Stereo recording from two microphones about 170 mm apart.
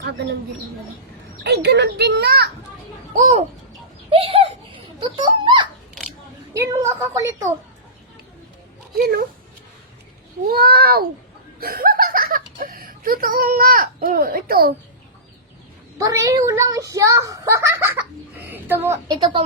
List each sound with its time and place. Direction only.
0.0 s speech: 80° right
1.5 s a child's voice: 80° right
3.2 s a child's voice: 40° right (ahead or behind)
4.1 s a sound: 35° right (ahead or behind)
6.5 s a woman's voice: 15° right (ahead or behind)
9.0 s a child's voice: 60° right (ahead or behind)
10.4 s a child's voice: 65° right (ahead or behind)
16.0 s a child's voice: 20° right (ahead or behind)
19.0 s a woman's voice: 30° right (ahead or behind)